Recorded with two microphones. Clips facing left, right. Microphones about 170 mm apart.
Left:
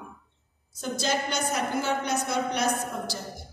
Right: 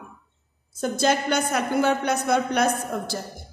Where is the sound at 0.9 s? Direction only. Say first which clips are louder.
Right 6 dB; 55° right (ahead or behind).